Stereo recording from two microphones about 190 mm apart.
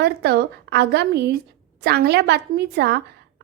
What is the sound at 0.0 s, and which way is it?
A woman's voice, 60° right (ahead or behind).